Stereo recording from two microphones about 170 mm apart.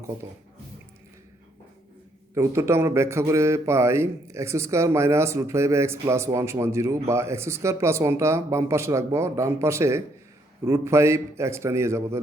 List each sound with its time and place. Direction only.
2.3 s speech: 15° right (ahead or behind)